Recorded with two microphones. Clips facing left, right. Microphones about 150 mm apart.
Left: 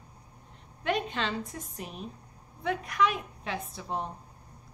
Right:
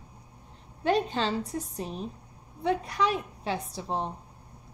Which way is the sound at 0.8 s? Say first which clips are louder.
Right 4 dB; 30° right (ahead or behind).